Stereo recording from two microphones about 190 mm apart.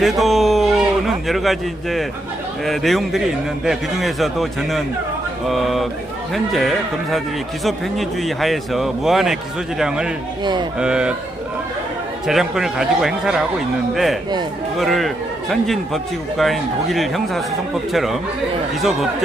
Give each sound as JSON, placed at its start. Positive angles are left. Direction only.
{"t": 0.0, "sound": "a man's voice", "side_deg": 0}
{"t": 10.4, "sound": "speech", "side_deg": -25}
{"t": 10.8, "sound": "speech", "side_deg": -5}
{"t": 12.3, "sound": "speech", "side_deg": 0}
{"t": 14.8, "sound": "speech", "side_deg": 0}